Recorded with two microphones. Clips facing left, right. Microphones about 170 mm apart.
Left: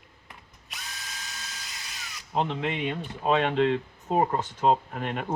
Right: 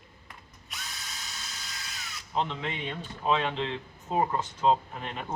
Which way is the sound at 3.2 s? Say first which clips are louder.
Left 5 dB; 45° left (ahead or behind).